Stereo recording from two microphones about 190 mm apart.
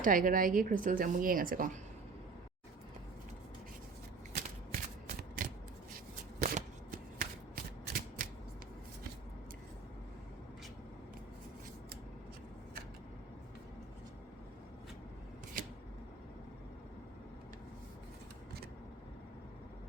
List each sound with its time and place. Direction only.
0.0 s speech: 45° right (ahead or behind)
4.3 s shuffling cards: 50° right (ahead or behind)
7.2 s shuffling cards: 50° right (ahead or behind)